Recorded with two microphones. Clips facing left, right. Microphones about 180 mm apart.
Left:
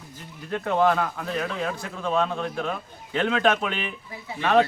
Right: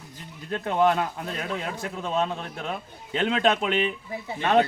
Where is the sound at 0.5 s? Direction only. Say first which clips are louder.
Left 1 dB; 20° right (ahead or behind).